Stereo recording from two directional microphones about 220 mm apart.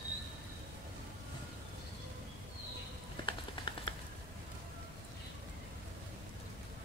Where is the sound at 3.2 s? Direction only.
20° left (ahead or behind).